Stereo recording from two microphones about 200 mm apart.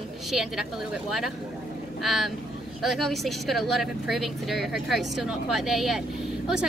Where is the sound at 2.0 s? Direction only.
Centre (ahead or behind).